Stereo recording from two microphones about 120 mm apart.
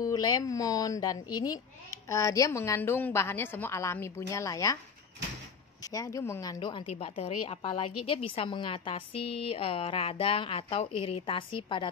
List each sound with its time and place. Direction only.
0.0 s speech: 30° left (ahead or behind)
5.8 s speech: 30° left (ahead or behind)
6.9 s a woman's voice: 60° left (ahead or behind)